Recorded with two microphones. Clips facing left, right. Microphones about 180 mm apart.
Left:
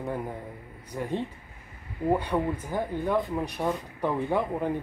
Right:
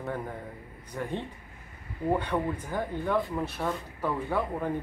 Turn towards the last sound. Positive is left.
turn(degrees=20)  # may be behind; listen again after turning